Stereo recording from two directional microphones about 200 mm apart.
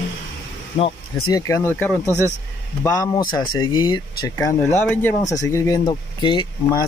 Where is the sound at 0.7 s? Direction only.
25° left (ahead or behind).